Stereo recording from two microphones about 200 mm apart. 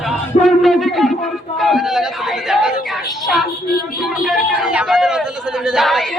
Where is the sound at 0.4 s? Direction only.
Centre (ahead or behind).